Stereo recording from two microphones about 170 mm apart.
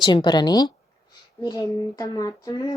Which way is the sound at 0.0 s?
25° left (ahead or behind).